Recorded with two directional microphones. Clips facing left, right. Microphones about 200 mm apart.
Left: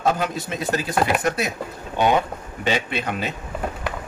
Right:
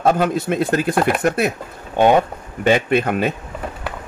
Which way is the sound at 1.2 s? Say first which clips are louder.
Right 5 dB; 50° right (ahead or behind).